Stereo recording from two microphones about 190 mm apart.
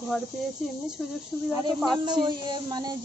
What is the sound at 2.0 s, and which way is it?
Speech, 25° right (ahead or behind).